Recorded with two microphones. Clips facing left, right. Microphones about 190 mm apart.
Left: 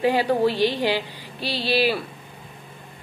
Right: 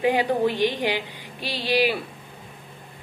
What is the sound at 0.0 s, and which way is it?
Speech, 15° right (ahead or behind).